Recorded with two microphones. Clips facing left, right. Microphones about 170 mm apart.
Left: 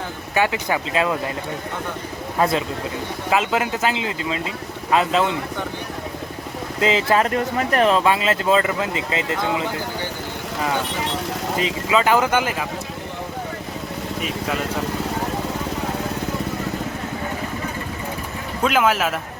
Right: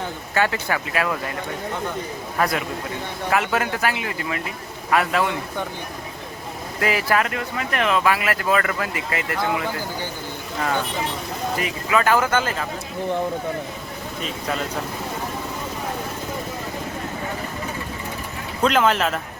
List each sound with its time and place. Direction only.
0.3 s speech: 15° left (ahead or behind)
2.4 s speech: 25° left (ahead or behind)
6.7 s speech: 20° left (ahead or behind)
7.3 s speech: 40° left (ahead or behind); by 9.6 s 20° left (ahead or behind)
11.5 s speech: 20° left (ahead or behind)
18.6 s speech: 5° left (ahead or behind)